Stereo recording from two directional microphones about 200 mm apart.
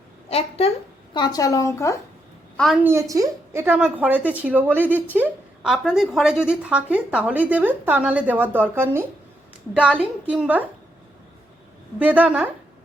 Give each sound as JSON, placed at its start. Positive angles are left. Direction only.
{"t": 0.3, "sound": "a sound", "side_deg": 30}
{"t": 1.1, "sound": "a woman's voice", "side_deg": 20}
{"t": 2.8, "sound": "a woman's voice", "side_deg": -15}
{"t": 11.9, "sound": "a woman's voice", "side_deg": -10}